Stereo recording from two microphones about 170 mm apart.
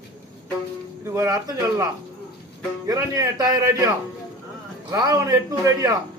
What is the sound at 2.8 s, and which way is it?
Speech, 20° right (ahead or behind).